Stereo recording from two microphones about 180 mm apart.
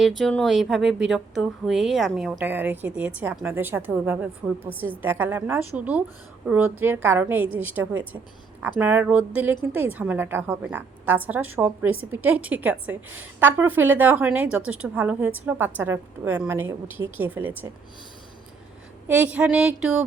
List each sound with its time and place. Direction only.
0.0 s a woman's voice: 5° left (ahead or behind)
19.0 s a woman's voice: 10° right (ahead or behind)